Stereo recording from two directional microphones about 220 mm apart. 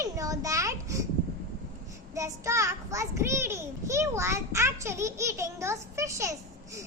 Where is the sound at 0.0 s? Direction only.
15° right (ahead or behind).